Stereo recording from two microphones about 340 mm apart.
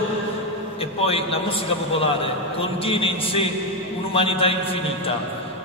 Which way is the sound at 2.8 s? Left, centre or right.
Centre.